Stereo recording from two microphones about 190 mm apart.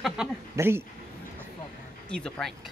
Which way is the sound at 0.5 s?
10° right (ahead or behind).